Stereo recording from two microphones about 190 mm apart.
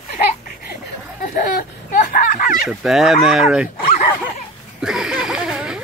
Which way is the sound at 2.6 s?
Centre (ahead or behind).